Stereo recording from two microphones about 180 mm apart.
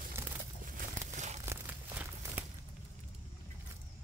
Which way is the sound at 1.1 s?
40° right (ahead or behind).